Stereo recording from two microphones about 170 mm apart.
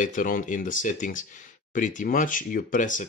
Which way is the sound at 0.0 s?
50° left (ahead or behind).